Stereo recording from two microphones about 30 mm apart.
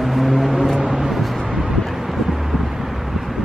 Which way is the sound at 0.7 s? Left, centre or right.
Centre.